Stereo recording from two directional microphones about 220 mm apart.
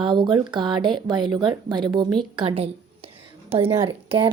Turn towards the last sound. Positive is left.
turn(degrees=-20)  # may be behind; listen again after turning